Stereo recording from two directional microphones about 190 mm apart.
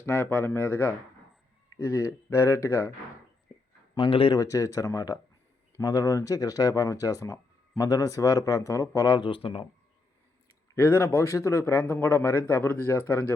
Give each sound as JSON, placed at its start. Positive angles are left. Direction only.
{"t": 0.0, "sound": "speech", "side_deg": 10}
{"t": 3.9, "sound": "speech", "side_deg": 25}
{"t": 10.8, "sound": "speech", "side_deg": 15}